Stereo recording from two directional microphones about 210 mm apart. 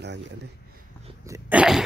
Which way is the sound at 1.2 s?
10° right (ahead or behind).